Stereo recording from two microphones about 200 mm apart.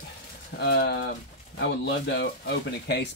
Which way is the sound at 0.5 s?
55° left (ahead or behind).